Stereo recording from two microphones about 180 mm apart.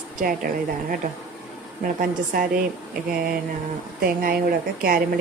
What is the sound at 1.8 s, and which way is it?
Speech, 50° right (ahead or behind).